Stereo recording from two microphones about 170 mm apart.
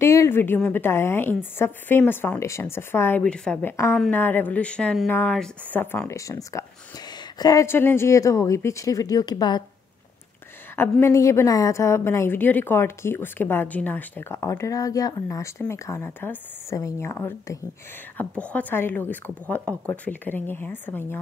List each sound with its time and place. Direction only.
0.0 s a woman's voice: 15° left (ahead or behind)
10.8 s a woman's voice: 15° left (ahead or behind)